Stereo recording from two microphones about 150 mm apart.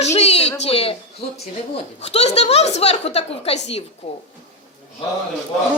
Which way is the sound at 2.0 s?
45° left (ahead or behind).